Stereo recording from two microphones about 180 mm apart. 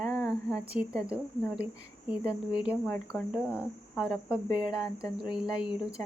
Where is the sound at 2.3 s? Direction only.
5° right (ahead or behind).